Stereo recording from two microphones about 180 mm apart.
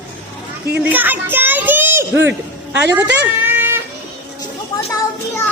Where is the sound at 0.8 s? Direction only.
10° right (ahead or behind).